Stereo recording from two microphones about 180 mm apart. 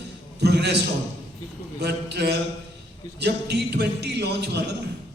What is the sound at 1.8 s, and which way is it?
A man's voice, 65° right (ahead or behind).